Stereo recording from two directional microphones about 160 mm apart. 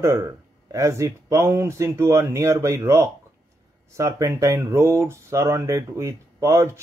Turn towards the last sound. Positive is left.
turn(degrees=-20)  # may be behind; listen again after turning